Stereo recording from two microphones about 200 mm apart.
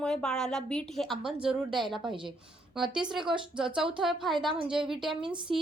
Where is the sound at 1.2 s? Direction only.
25° right (ahead or behind).